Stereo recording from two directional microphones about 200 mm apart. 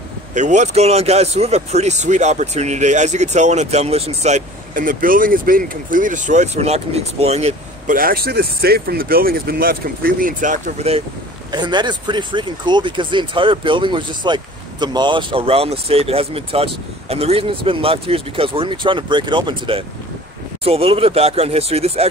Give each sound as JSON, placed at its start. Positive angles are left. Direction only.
{"t": 0.3, "sound": "speech", "side_deg": -35}